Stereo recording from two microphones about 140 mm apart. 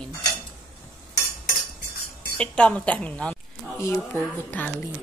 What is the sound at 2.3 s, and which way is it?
A woman's voice, 10° left (ahead or behind).